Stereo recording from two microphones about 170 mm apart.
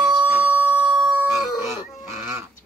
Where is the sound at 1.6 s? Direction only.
15° right (ahead or behind).